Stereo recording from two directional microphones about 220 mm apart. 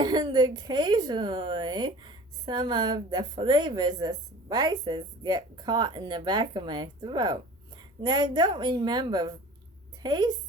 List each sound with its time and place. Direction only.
0.0 s speech: 20° right (ahead or behind)